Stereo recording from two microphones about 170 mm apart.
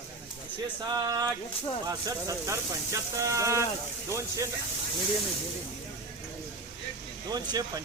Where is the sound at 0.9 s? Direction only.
20° right (ahead or behind).